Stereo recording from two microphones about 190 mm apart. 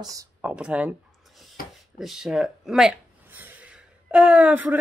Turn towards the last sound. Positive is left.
turn(degrees=-10)  # may be behind; listen again after turning